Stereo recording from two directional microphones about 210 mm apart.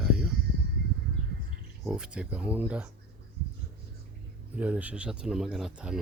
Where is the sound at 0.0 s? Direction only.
5° right (ahead or behind).